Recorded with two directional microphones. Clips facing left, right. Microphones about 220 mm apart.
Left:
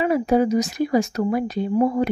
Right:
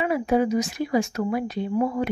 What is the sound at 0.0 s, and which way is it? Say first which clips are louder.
Speech: left 3 dB; 40° left (ahead or behind).